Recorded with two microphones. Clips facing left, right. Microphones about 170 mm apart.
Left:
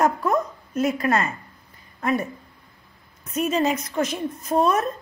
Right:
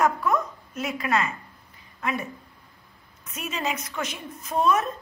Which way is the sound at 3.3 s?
40° left (ahead or behind).